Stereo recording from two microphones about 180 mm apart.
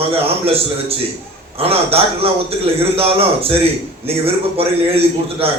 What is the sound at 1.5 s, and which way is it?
A man's voice, 35° right (ahead or behind).